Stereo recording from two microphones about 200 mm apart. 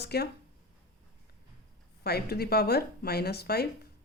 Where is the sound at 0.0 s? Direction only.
55° left (ahead or behind).